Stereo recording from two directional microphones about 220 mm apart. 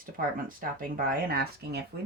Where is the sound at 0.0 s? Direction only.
40° right (ahead or behind).